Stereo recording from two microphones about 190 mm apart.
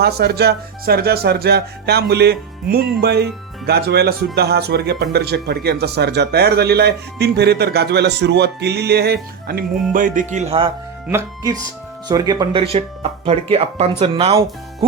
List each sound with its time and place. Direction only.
0.0 s speech: 60° right (ahead or behind)
9.9 s speech: 45° right (ahead or behind)
11.1 s speech: 15° right (ahead or behind)
12.7 s speech: 30° right (ahead or behind)